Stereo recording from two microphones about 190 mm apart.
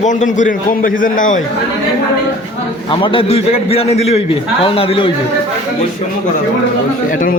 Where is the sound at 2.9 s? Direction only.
25° left (ahead or behind).